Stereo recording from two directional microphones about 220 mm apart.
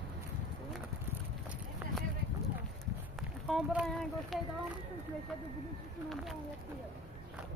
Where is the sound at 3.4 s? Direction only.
Centre (ahead or behind).